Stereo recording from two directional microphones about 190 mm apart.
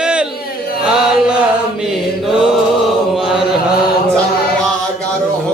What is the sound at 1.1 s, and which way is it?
Chant, 5° right (ahead or behind).